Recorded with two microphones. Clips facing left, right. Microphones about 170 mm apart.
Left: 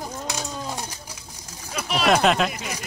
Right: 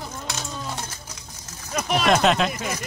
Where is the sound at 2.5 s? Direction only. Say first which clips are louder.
Right 4 dB; 50° right (ahead or behind).